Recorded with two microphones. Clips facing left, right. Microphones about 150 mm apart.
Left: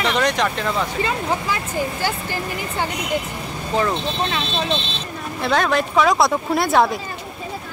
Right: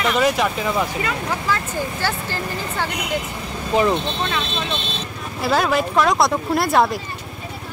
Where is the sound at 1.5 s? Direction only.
15° left (ahead or behind).